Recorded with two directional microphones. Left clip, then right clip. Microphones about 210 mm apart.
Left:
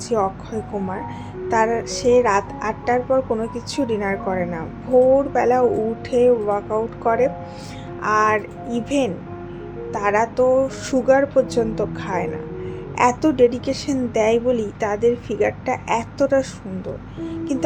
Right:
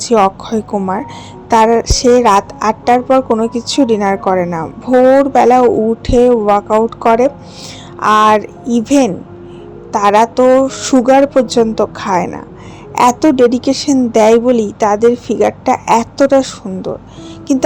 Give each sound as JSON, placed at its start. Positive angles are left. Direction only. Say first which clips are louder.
{"t": 0.0, "sound": "speech", "louder": "right 11 dB", "side_deg": -40}